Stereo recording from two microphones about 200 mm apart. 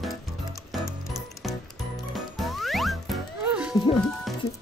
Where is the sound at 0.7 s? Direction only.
Centre (ahead or behind).